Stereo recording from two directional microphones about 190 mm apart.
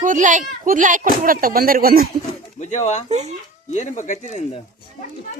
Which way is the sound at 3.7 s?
40° left (ahead or behind).